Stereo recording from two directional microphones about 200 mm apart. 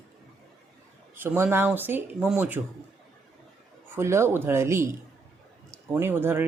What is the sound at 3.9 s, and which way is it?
A woman's voice, 15° right (ahead or behind).